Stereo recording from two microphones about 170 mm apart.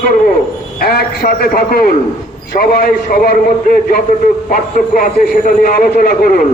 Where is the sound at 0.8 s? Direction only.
65° left (ahead or behind).